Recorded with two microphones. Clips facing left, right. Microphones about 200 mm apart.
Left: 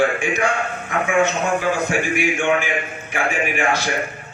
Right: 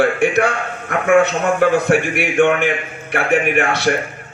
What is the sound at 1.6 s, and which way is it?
A man's voice, 65° right (ahead or behind).